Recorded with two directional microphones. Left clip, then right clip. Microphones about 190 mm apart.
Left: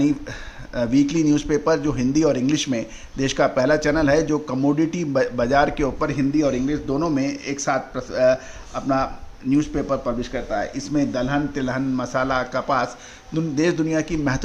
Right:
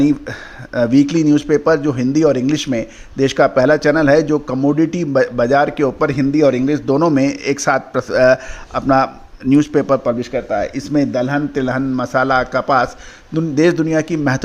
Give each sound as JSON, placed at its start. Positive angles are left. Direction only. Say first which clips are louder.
{"t": 0.0, "sound": "speech", "louder": "right 6 dB", "side_deg": -30}